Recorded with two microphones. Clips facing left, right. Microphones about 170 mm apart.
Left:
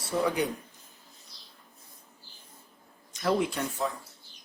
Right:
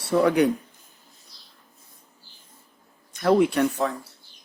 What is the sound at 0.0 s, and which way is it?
Speech, 65° right (ahead or behind).